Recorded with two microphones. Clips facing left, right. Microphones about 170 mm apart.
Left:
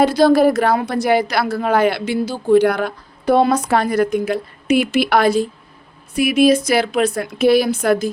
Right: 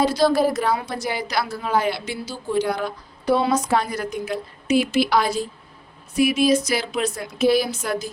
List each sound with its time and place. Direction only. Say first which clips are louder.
0.0 s a woman's voice: left 6 dB; 55° left (ahead or behind)